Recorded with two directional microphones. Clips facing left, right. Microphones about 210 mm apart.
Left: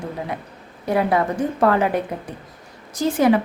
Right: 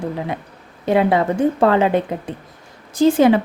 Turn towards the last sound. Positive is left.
turn(degrees=-25)  # may be behind; listen again after turning